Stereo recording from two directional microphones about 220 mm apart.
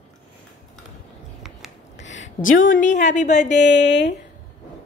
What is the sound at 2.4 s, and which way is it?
Speech, 60° left (ahead or behind).